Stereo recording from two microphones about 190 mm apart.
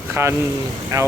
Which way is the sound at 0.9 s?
15° right (ahead or behind).